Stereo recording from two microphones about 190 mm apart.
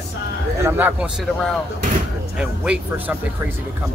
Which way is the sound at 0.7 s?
10° right (ahead or behind).